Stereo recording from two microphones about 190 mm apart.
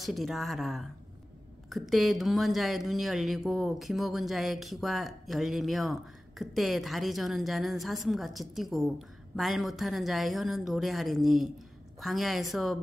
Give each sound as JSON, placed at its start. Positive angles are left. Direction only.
{"t": 0.0, "sound": "speech", "side_deg": 0}